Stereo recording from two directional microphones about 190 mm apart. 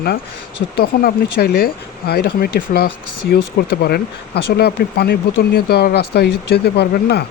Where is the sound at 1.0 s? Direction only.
55° left (ahead or behind).